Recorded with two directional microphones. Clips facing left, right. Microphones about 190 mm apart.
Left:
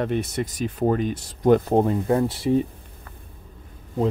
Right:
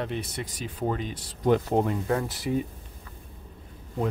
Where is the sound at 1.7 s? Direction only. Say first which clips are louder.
Left 5 dB; 30° left (ahead or behind).